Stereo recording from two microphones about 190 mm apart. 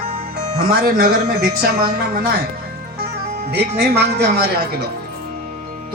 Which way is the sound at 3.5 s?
60° right (ahead or behind).